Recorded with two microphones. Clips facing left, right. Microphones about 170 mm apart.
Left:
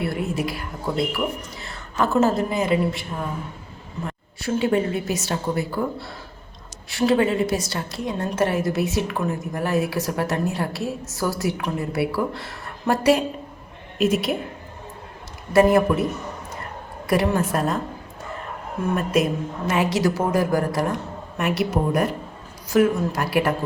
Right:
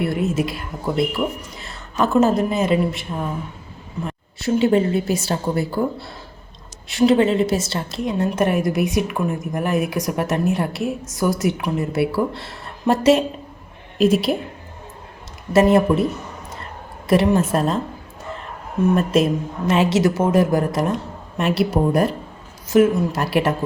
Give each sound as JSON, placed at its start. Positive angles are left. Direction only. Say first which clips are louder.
{"t": 0.0, "sound": "a woman's voice", "louder": "right 4 dB", "side_deg": -20}
{"t": 15.5, "sound": "a woman's voice", "louder": "right 2 dB", "side_deg": -25}
{"t": 17.1, "sound": "a woman's voice", "louder": "right 4 dB", "side_deg": -25}
{"t": 18.9, "sound": "a woman's voice", "louder": "right 4 dB", "side_deg": -30}